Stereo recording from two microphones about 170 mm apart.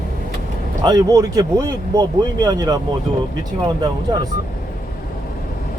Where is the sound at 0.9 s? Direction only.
20° right (ahead or behind).